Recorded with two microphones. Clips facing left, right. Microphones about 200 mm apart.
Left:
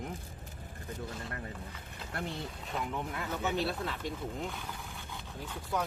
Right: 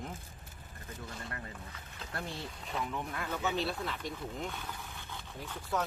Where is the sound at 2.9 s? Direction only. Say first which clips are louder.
Left 1 dB; 15° left (ahead or behind).